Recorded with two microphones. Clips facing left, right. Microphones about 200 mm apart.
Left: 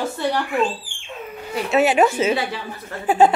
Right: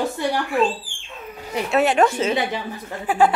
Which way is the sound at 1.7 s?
5° left (ahead or behind).